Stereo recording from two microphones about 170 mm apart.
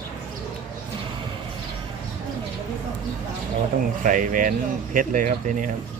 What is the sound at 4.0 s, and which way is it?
Speech, 50° right (ahead or behind).